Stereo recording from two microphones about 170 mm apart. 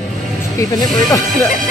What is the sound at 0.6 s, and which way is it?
Speech, 20° left (ahead or behind).